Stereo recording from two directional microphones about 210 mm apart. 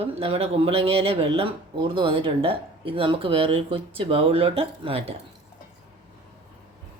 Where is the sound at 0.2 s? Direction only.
25° right (ahead or behind).